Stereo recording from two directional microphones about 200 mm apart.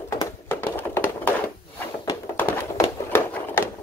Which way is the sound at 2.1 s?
10° left (ahead or behind).